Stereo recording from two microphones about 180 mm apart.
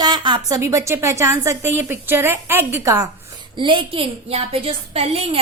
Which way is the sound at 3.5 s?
30° right (ahead or behind).